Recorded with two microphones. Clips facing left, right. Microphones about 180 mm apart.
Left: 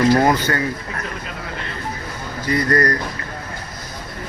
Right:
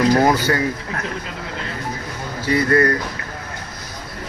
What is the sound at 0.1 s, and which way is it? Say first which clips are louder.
Speech: even; 5° right (ahead or behind).